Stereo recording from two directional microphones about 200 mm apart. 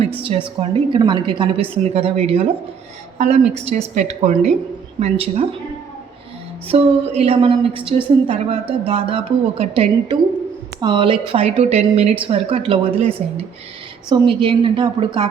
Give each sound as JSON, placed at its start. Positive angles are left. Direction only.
{"t": 0.6, "sound": "a woman's voice", "side_deg": -25}
{"t": 6.7, "sound": "a woman's voice", "side_deg": -30}
{"t": 14.1, "sound": "a woman's voice", "side_deg": -25}